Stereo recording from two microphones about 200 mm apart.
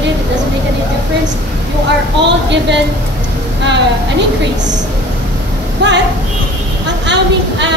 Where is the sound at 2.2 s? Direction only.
60° right (ahead or behind).